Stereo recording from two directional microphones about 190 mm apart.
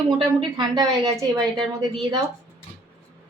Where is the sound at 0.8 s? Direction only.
20° right (ahead or behind).